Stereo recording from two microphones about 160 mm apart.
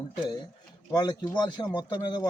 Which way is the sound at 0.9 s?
25° left (ahead or behind).